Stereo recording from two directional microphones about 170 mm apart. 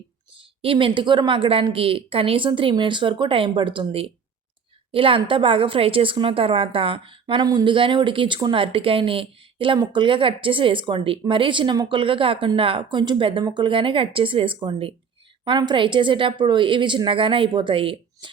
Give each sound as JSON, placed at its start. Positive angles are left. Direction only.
{"t": 0.6, "sound": "a woman's voice", "side_deg": -30}